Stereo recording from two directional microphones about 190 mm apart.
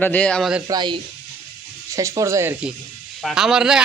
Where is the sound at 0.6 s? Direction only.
25° right (ahead or behind).